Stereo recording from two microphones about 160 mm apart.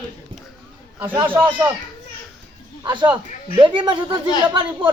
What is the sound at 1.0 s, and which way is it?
Speech, 10° right (ahead or behind).